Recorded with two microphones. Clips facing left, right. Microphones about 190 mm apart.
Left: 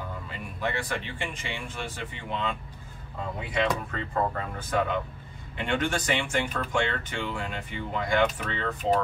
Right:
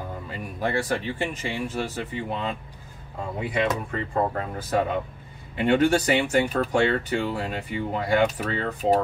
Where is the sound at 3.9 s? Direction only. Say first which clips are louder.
Right 3 dB; 25° right (ahead or behind).